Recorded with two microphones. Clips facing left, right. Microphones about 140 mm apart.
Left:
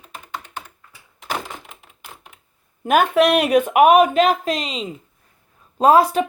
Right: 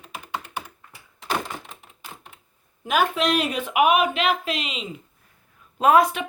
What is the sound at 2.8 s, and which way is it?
A woman's voice, 60° left (ahead or behind).